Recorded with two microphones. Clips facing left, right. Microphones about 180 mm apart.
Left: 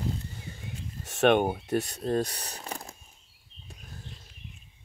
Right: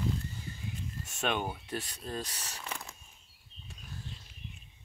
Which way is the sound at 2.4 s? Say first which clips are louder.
Left 4 dB; 35° left (ahead or behind).